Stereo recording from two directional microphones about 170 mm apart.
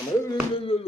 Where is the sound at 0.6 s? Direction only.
35° left (ahead or behind).